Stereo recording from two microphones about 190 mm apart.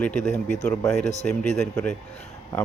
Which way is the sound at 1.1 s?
35° left (ahead or behind).